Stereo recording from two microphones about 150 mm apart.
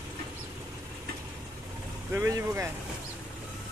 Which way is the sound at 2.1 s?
20° right (ahead or behind).